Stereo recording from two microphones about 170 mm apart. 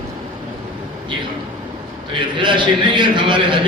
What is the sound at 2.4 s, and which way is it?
A man's voice, 30° right (ahead or behind).